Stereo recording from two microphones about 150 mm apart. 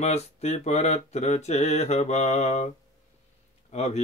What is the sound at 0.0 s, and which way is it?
Mantra, 45° left (ahead or behind).